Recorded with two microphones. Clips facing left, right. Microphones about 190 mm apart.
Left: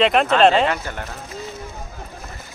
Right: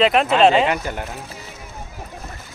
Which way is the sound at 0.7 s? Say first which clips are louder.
Right 2 dB; 15° right (ahead or behind).